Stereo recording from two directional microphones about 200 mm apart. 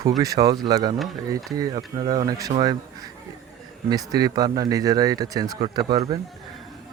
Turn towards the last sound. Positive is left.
turn(degrees=-25)  # may be behind; listen again after turning